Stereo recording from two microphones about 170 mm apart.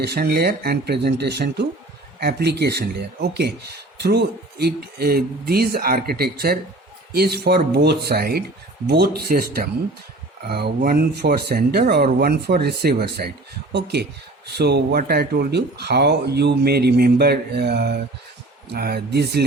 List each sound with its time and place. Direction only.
0.0 s speech: 75° right (ahead or behind)
13.7 s speech: 80° right